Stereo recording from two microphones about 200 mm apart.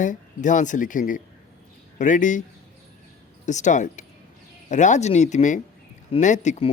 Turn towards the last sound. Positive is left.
turn(degrees=35)  # may be behind; listen again after turning